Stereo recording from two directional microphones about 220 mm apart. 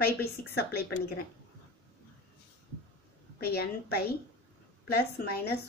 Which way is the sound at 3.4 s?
45° left (ahead or behind).